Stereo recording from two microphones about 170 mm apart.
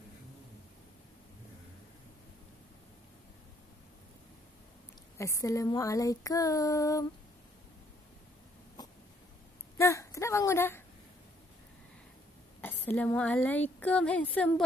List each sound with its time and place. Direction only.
5.1 s female singing: 20° left (ahead or behind)
9.8 s a sound: 15° left (ahead or behind)
12.6 s a woman's voice: 10° left (ahead or behind)